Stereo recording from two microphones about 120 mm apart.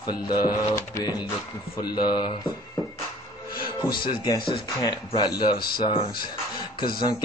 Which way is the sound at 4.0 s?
40° left (ahead or behind).